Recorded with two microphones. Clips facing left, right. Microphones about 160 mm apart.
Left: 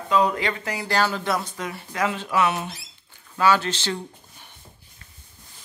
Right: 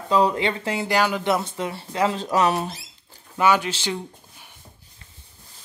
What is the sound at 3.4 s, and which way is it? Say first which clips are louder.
Speech: even; 15° right (ahead or behind).